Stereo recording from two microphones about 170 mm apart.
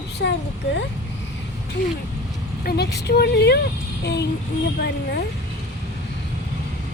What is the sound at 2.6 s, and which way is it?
Speech, 70° left (ahead or behind).